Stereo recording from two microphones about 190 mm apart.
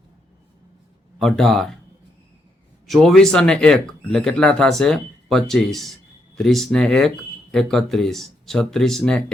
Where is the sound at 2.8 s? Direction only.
Centre (ahead or behind).